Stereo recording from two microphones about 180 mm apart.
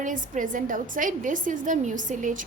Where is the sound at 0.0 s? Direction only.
45° right (ahead or behind).